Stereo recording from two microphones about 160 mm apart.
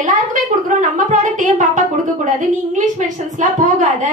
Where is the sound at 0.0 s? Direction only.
55° right (ahead or behind).